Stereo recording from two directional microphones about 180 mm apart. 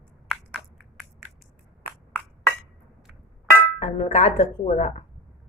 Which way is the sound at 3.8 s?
35° left (ahead or behind).